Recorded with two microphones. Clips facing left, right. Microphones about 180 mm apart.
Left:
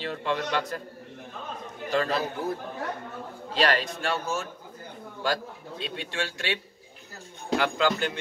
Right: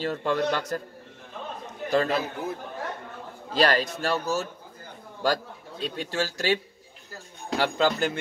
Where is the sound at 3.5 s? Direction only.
40° right (ahead or behind).